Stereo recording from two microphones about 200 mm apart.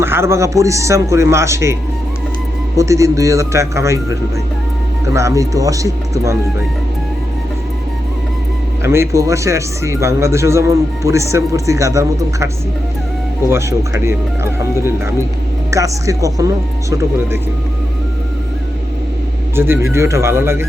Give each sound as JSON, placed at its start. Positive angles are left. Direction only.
{"t": 0.0, "sound": "speech", "side_deg": -10}
{"t": 2.7, "sound": "speech", "side_deg": -15}
{"t": 8.8, "sound": "speech", "side_deg": -15}
{"t": 13.5, "sound": "speech", "side_deg": -15}
{"t": 19.5, "sound": "speech", "side_deg": -10}